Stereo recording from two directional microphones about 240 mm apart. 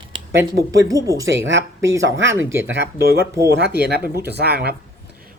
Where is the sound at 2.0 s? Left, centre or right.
Right.